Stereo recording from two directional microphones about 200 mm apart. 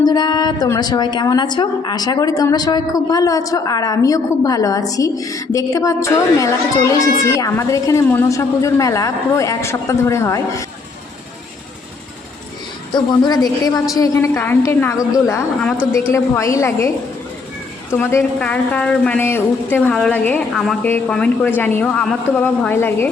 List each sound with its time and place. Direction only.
0.0 s a woman's voice: 20° left (ahead or behind)
12.9 s a woman's voice: 20° left (ahead or behind)
17.9 s a woman's voice: 10° left (ahead or behind)